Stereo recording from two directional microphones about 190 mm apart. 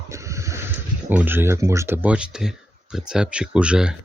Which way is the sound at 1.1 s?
10° right (ahead or behind).